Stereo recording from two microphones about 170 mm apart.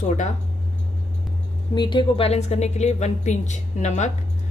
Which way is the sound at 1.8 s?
30° left (ahead or behind).